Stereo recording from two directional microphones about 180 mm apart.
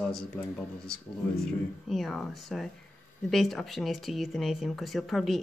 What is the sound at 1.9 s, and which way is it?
A woman's voice, centre (ahead or behind).